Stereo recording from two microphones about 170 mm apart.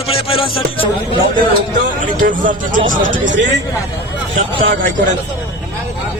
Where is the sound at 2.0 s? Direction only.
50° right (ahead or behind).